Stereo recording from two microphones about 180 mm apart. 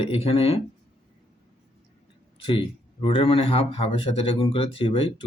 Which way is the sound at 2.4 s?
30° left (ahead or behind).